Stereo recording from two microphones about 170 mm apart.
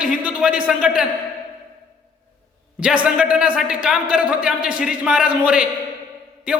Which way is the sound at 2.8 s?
5° right (ahead or behind).